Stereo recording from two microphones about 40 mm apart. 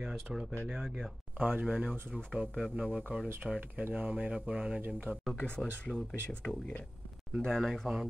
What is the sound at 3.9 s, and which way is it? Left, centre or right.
Speech, right.